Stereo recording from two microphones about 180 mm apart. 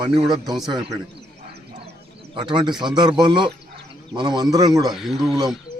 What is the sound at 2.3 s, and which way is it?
Speech, 25° right (ahead or behind).